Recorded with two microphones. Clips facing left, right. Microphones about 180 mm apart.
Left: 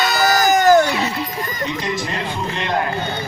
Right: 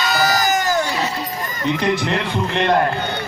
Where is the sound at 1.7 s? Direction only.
60° right (ahead or behind).